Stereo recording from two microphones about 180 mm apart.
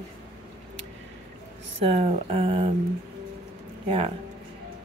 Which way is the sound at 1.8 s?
35° right (ahead or behind).